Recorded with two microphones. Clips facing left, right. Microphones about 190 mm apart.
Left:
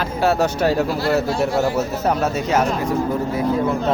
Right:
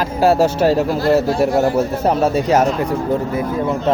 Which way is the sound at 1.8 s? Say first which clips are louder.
Right 4 dB; 30° right (ahead or behind).